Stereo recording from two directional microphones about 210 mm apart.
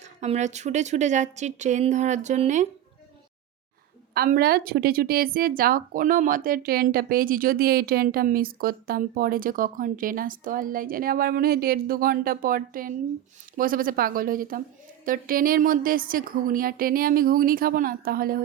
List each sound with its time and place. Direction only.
0.0 s speech: 35° right (ahead or behind)
4.1 s a woman's voice: 50° right (ahead or behind)